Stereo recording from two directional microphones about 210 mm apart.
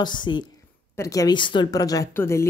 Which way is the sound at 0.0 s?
20° left (ahead or behind).